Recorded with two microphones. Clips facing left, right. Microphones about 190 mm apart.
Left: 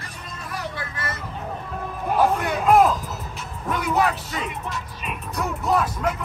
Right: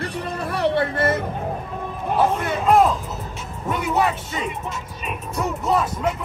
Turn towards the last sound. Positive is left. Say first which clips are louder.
# right 1 dB
turn(degrees=0)  # may be behind; listen again after turning